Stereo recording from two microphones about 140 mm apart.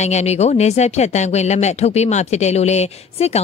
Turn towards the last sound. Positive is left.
turn(degrees=50)  # may be behind; listen again after turning